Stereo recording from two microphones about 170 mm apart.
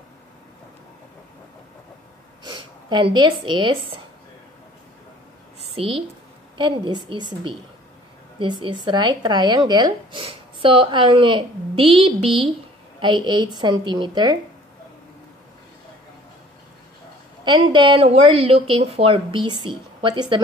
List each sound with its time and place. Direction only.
2.4 s speech: 25° right (ahead or behind)
5.7 s speech: 30° right (ahead or behind)
17.5 s a woman's voice: 30° right (ahead or behind)